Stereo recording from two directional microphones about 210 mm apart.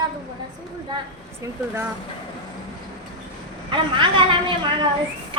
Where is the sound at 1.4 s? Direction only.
15° right (ahead or behind).